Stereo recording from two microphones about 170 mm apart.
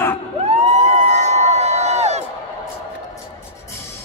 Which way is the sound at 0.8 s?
40° right (ahead or behind).